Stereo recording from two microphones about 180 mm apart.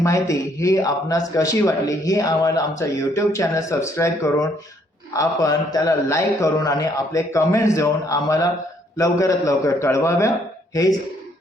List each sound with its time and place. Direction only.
0.0 s a man's voice: 15° left (ahead or behind)